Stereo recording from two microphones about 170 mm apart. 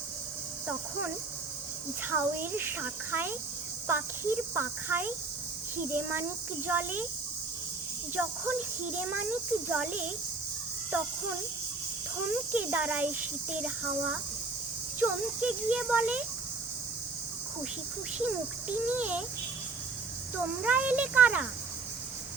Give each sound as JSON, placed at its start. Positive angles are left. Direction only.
{"t": 2.0, "sound": "speech", "side_deg": -10}
{"t": 8.1, "sound": "speech", "side_deg": -10}
{"t": 12.3, "sound": "speech", "side_deg": -10}
{"t": 18.9, "sound": "speech", "side_deg": -10}
{"t": 20.7, "sound": "speech", "side_deg": -10}